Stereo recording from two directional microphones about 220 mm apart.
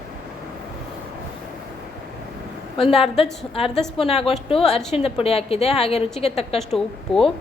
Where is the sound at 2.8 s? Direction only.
25° left (ahead or behind).